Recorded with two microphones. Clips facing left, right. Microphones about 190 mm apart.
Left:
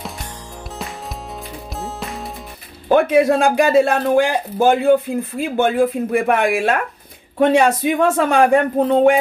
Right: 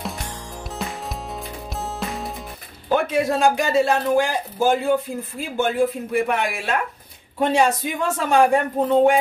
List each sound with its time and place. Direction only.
1.8 s music: centre (ahead or behind)
2.9 s speech: 60° left (ahead or behind)